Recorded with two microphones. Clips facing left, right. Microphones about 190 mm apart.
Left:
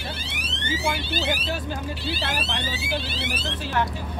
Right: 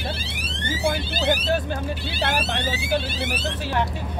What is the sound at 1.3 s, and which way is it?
Speech, 50° right (ahead or behind).